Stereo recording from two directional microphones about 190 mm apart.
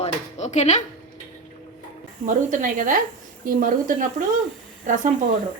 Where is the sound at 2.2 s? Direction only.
45° right (ahead or behind).